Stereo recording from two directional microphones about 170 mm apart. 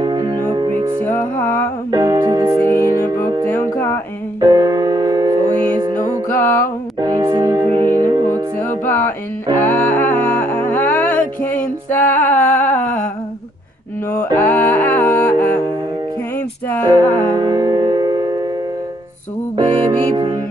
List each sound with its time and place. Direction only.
0.0 s music: 25° right (ahead or behind)
1.0 s music: 10° left (ahead or behind)
1.9 s music: 20° right (ahead or behind)
3.4 s music: 15° left (ahead or behind)
4.4 s music: 20° right (ahead or behind)
6.2 s music: 15° left (ahead or behind)
7.0 s music: 25° right (ahead or behind)
8.5 s music: 15° left (ahead or behind)
14.1 s music: 10° left (ahead or behind)
17.2 s music: 25° right (ahead or behind)
19.5 s music: 25° right (ahead or behind)